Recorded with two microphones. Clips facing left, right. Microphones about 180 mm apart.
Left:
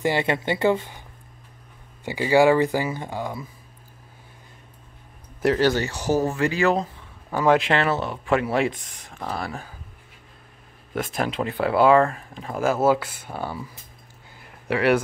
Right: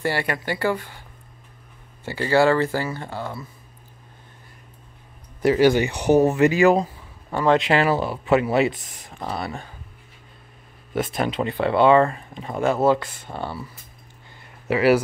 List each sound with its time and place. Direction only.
0.0 s speech: 20° left (ahead or behind)
2.0 s speech: 15° left (ahead or behind)
5.6 s speech: 15° right (ahead or behind)
7.3 s speech: 5° left (ahead or behind)
10.9 s speech: centre (ahead or behind)
14.7 s speech: 5° right (ahead or behind)